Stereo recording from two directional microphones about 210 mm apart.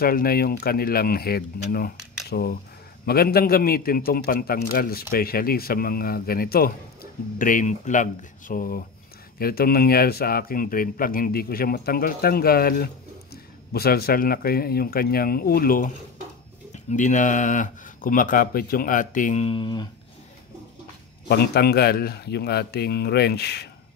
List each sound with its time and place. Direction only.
0.0 s speech: 45° left (ahead or behind); by 19.9 s 20° left (ahead or behind)
21.3 s speech: 50° left (ahead or behind)